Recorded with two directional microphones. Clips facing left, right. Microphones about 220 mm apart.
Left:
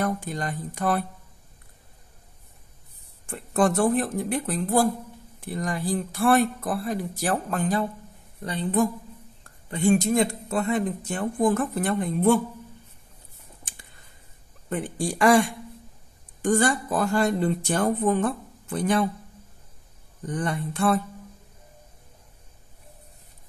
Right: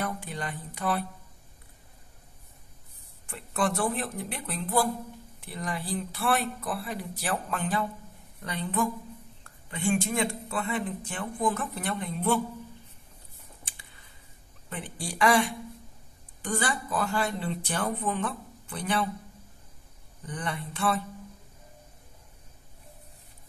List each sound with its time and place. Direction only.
0.0 s speech: 45° left (ahead or behind)
3.3 s speech: 45° left (ahead or behind)
14.7 s speech: 45° left (ahead or behind)
20.2 s speech: 45° left (ahead or behind)